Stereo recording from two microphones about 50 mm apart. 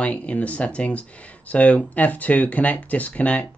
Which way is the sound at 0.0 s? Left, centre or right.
Left.